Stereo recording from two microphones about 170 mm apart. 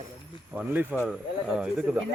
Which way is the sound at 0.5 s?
10° right (ahead or behind).